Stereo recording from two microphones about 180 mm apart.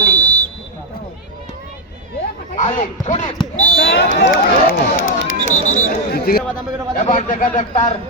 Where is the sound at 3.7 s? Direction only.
65° left (ahead or behind).